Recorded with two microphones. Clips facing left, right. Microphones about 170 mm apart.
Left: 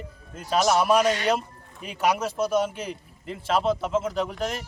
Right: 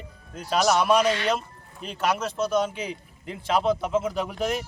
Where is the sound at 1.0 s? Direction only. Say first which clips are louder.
Left 1 dB; 45° left (ahead or behind).